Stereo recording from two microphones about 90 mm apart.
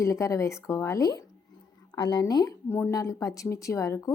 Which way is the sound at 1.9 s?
50° left (ahead or behind).